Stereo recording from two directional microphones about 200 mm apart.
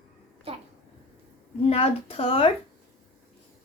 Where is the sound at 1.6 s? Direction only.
30° left (ahead or behind).